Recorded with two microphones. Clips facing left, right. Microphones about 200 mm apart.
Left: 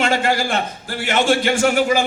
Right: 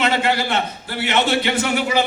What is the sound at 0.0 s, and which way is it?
A man's voice, 45° left (ahead or behind).